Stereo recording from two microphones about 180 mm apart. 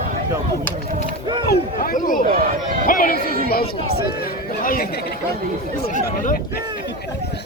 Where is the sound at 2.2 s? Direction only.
50° right (ahead or behind).